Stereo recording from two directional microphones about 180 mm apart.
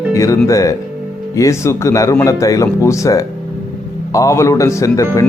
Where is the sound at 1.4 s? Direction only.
15° left (ahead or behind).